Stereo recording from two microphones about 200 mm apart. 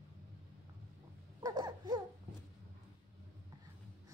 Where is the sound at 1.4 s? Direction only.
20° right (ahead or behind).